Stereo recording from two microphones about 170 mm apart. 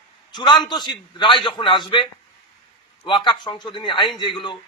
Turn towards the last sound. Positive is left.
turn(degrees=30)  # may be behind; listen again after turning